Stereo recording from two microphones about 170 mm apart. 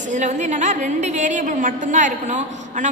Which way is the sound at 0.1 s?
45° right (ahead or behind).